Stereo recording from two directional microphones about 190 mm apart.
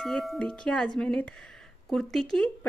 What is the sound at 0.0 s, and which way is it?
Speech, centre (ahead or behind).